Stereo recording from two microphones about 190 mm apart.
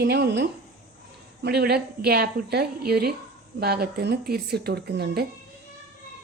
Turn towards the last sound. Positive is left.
turn(degrees=-60)  # may be behind; listen again after turning